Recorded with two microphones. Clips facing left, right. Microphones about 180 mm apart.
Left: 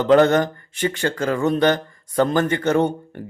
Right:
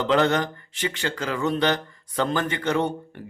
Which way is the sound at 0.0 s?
45° left (ahead or behind).